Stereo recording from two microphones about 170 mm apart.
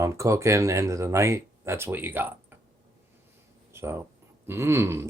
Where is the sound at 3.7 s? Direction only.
15° right (ahead or behind).